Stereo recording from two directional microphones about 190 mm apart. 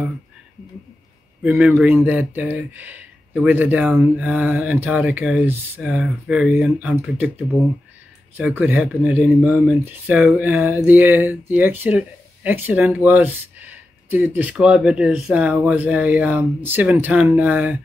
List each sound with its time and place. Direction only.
1.4 s speech: 10° right (ahead or behind)